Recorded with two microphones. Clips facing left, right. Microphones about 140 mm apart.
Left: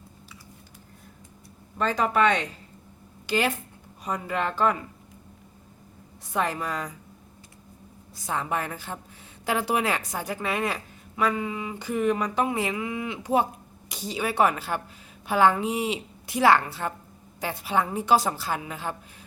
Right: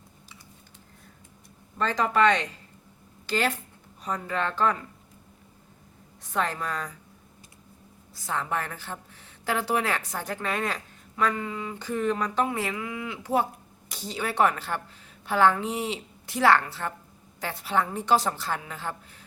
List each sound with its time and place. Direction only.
1.8 s speech: 10° left (ahead or behind)
6.2 s speech: 10° left (ahead or behind)
8.1 s speech: 15° left (ahead or behind)